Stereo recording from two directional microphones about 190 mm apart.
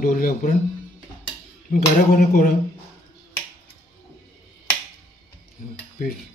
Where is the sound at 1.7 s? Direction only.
50° left (ahead or behind).